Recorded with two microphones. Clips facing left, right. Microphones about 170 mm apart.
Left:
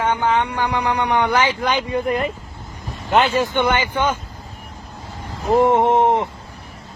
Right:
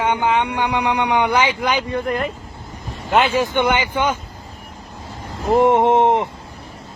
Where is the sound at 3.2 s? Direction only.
15° right (ahead or behind).